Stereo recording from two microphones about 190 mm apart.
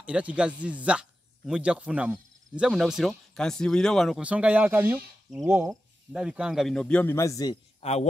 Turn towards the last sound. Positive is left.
turn(degrees=30)  # may be behind; listen again after turning